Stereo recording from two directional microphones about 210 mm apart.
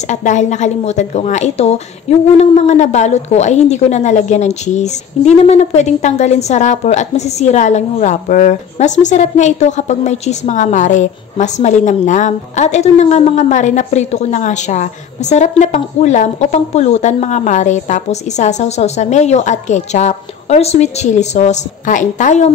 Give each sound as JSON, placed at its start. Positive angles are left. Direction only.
{"t": 0.1, "sound": "a woman's voice", "side_deg": 35}